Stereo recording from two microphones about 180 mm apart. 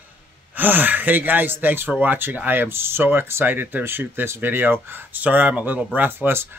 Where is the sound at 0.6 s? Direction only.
10° right (ahead or behind).